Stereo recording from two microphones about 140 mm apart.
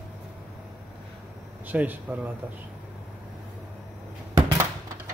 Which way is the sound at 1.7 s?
10° right (ahead or behind).